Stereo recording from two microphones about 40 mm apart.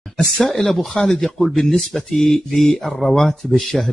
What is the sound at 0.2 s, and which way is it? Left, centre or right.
Speech, centre.